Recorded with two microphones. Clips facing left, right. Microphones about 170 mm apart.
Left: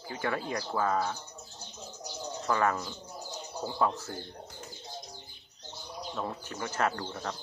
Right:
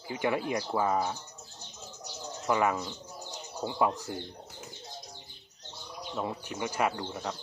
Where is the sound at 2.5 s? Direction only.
15° right (ahead or behind).